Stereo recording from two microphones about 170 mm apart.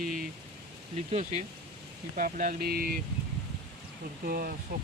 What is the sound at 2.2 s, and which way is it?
Speech, 50° right (ahead or behind).